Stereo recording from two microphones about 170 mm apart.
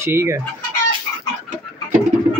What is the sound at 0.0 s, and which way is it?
Speech, 15° right (ahead or behind).